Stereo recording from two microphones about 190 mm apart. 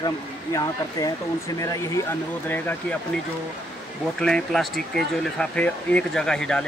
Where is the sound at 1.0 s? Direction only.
20° left (ahead or behind).